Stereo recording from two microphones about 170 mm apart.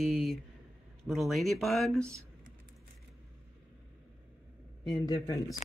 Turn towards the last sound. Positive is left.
turn(degrees=20)  # may be behind; listen again after turning